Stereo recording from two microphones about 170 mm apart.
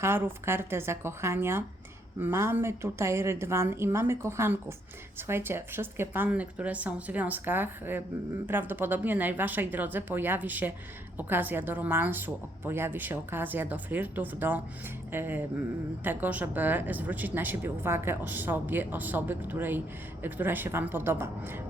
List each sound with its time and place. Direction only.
0.0 s speech: 15° right (ahead or behind)